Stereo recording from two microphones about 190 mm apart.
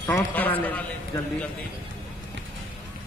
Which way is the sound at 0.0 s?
10° left (ahead or behind).